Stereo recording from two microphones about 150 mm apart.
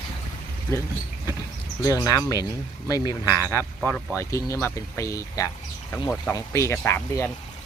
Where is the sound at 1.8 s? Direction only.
25° left (ahead or behind).